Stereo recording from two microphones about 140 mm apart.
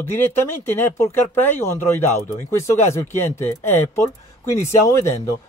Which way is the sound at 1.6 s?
20° left (ahead or behind).